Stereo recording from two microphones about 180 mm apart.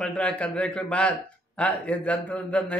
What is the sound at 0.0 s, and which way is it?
A man's voice, 5° left (ahead or behind).